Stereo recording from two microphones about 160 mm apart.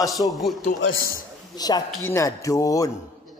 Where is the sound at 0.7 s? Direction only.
65° left (ahead or behind).